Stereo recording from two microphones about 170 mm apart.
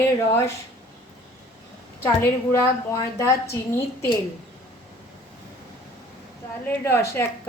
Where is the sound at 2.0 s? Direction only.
15° left (ahead or behind).